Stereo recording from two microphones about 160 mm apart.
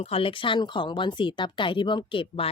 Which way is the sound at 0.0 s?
35° left (ahead or behind).